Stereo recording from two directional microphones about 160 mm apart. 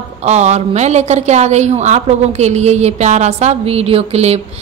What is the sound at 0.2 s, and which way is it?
A woman's voice, 45° right (ahead or behind).